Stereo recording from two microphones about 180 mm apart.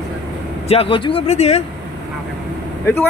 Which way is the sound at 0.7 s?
30° left (ahead or behind).